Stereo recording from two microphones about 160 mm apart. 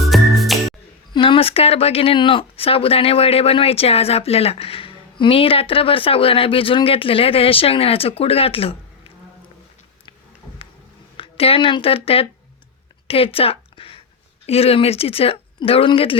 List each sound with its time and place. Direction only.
0.0 s music: centre (ahead or behind)
1.1 s speech: 30° left (ahead or behind)
11.2 s speech: 35° left (ahead or behind)
13.1 s a sound: 35° left (ahead or behind)
14.4 s speech: 40° left (ahead or behind)